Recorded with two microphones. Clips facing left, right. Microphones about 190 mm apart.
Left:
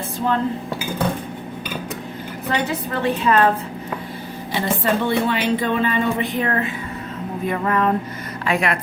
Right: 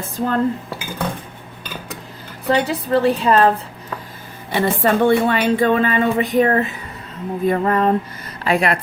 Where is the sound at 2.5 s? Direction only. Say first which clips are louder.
Right 6 dB; 35° right (ahead or behind).